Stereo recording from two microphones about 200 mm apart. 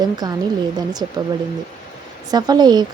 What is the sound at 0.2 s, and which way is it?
Speech, 20° right (ahead or behind).